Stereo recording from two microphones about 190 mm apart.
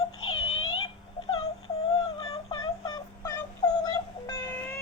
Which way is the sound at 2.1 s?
25° left (ahead or behind).